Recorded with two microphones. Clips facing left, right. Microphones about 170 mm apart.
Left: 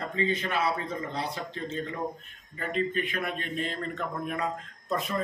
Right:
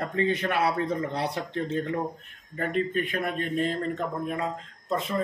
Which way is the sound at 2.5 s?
55° right (ahead or behind).